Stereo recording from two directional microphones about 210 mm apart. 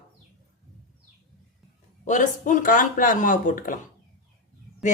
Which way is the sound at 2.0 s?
35° left (ahead or behind).